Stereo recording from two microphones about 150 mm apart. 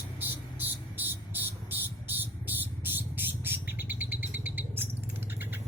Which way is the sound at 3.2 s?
10° right (ahead or behind).